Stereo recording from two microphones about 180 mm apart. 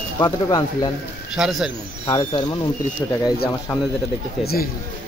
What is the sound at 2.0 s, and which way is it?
Speech, 25° left (ahead or behind).